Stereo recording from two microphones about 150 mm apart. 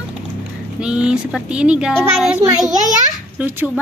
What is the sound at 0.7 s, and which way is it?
Speech, 5° right (ahead or behind).